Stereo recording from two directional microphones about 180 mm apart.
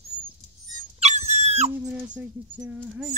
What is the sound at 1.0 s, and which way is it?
Dog, 40° right (ahead or behind).